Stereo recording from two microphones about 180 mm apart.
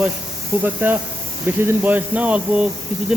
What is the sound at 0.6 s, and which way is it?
A man's voice, 10° right (ahead or behind).